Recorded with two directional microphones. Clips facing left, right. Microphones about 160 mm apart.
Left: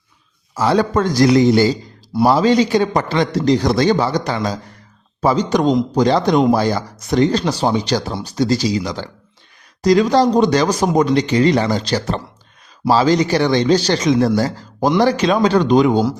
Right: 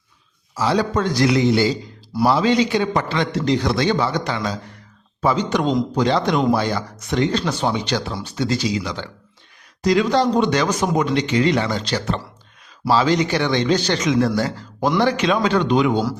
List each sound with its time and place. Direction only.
0.5 s a man's voice: 55° left (ahead or behind); by 16.0 s 40° left (ahead or behind)